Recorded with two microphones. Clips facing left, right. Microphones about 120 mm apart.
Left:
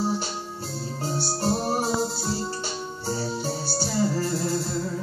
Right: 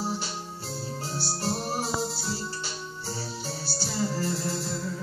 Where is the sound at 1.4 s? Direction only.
45° left (ahead or behind).